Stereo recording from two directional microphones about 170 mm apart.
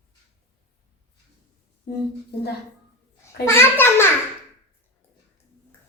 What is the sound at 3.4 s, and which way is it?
Speech, 15° left (ahead or behind).